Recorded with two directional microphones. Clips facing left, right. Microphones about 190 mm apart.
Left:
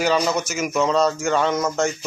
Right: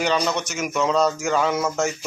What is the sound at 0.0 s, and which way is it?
Speech, 5° left (ahead or behind).